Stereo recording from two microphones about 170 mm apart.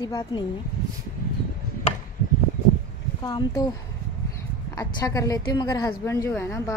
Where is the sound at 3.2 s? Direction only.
25° left (ahead or behind).